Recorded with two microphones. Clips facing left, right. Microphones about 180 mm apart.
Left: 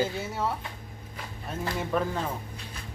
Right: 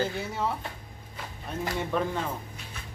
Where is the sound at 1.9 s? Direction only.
5° left (ahead or behind).